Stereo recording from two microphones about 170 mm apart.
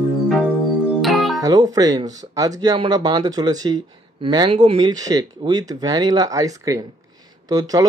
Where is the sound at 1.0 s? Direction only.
Centre (ahead or behind).